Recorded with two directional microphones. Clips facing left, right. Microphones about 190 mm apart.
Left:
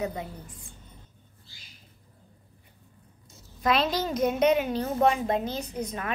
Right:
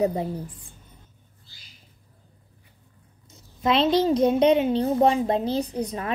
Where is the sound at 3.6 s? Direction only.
25° right (ahead or behind).